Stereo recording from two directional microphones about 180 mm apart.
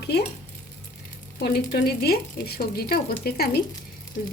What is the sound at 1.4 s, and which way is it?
Speech, 60° left (ahead or behind).